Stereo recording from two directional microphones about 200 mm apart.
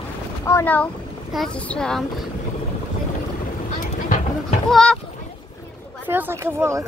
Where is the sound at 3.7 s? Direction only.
40° left (ahead or behind).